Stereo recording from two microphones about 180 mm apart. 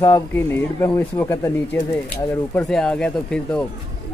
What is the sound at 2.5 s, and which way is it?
Speech, 5° left (ahead or behind).